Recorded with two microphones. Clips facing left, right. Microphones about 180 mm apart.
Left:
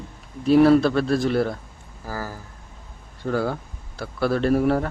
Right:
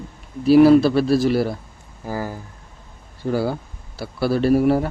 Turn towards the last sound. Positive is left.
turn(degrees=-5)  # may be behind; listen again after turning